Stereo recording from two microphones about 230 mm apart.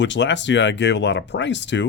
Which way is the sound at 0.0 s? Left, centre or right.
Left.